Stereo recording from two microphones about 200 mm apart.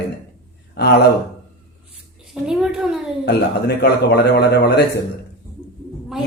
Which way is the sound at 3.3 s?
55° left (ahead or behind).